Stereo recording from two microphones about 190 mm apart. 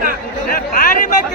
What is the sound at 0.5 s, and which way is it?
Chatter, 50° left (ahead or behind).